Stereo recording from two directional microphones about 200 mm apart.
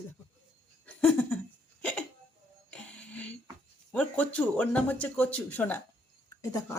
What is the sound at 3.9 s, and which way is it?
Speech, 5° left (ahead or behind).